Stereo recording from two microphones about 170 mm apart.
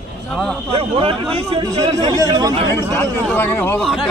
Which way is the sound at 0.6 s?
30° right (ahead or behind).